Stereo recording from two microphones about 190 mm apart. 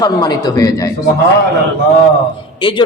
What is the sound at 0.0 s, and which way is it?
Speech, 20° left (ahead or behind).